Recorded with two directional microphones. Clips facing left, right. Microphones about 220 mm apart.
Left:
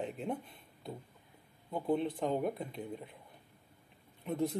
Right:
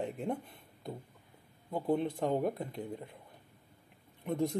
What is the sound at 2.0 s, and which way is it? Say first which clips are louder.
Speech: right 2 dB; 20° right (ahead or behind).